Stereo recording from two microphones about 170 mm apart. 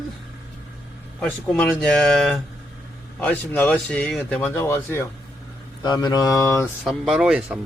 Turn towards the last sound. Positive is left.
turn(degrees=-5)  # may be behind; listen again after turning